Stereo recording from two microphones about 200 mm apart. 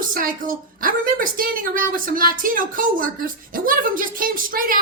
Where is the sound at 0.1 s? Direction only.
45° right (ahead or behind).